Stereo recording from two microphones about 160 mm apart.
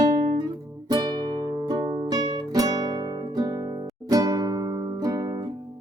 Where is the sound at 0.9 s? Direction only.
25° right (ahead or behind).